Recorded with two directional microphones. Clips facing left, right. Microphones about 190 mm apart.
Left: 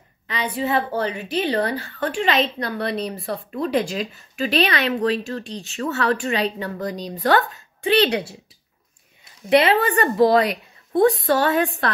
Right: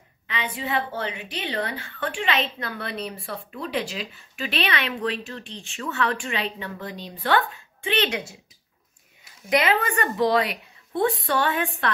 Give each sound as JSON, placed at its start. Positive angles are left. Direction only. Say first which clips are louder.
{"t": 0.3, "sound": "a woman's voice", "louder": "left 5 dB", "side_deg": 40}
{"t": 9.5, "sound": "a woman's voice", "louder": "left 6 dB", "side_deg": 30}